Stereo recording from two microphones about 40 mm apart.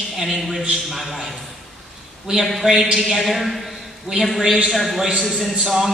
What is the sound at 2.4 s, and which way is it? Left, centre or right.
A man's voice, centre.